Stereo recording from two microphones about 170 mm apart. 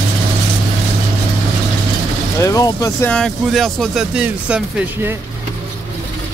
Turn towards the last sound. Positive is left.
turn(degrees=-5)  # may be behind; listen again after turning